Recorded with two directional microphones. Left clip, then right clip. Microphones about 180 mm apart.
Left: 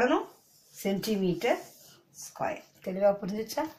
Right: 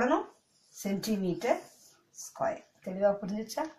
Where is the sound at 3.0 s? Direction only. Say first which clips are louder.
Left 2 dB; 25° left (ahead or behind).